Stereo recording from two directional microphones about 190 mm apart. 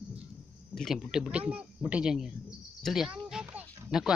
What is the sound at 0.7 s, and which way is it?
Speech, centre (ahead or behind).